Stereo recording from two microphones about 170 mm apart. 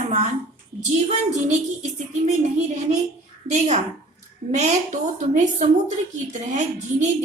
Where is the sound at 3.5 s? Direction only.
40° right (ahead or behind).